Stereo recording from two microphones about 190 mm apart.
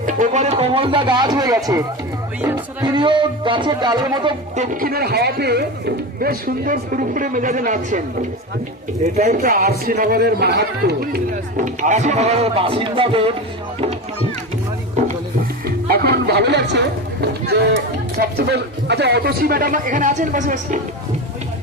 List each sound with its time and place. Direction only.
0.0 s speech: 40° right (ahead or behind); by 2.9 s 10° right (ahead or behind)
2.9 s speech: 25° right (ahead or behind)
4.5 s speech: 40° right (ahead or behind)
9.1 s speech: 40° right (ahead or behind)
15.6 s music: 55° right (ahead or behind)
18.2 s speech: 60° right (ahead or behind); by 20.7 s 45° right (ahead or behind)